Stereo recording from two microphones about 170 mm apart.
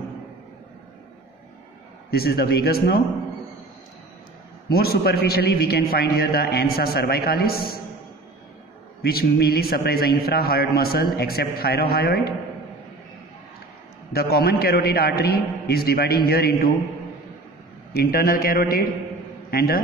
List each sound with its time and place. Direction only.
2.0 s speech: 65° left (ahead or behind)
4.6 s a man's voice: 65° left (ahead or behind)
9.0 s a man's voice: 70° left (ahead or behind)
14.1 s a man's voice: 65° left (ahead or behind)
17.9 s a man's voice: 60° left (ahead or behind)